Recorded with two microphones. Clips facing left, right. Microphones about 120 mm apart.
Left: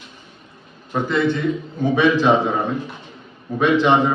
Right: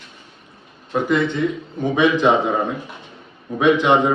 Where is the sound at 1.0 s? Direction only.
15° right (ahead or behind).